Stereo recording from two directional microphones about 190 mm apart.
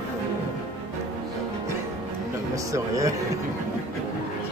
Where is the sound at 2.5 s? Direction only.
15° right (ahead or behind).